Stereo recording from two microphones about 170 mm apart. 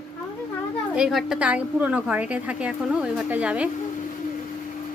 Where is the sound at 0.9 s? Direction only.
Centre (ahead or behind).